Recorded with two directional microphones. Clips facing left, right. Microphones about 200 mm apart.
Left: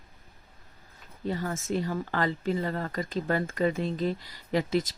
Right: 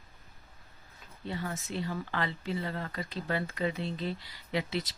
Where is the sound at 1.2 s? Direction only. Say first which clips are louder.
Left 6 dB; 45° left (ahead or behind).